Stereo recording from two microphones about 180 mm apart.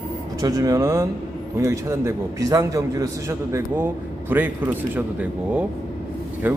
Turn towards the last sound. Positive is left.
turn(degrees=-10)  # may be behind; listen again after turning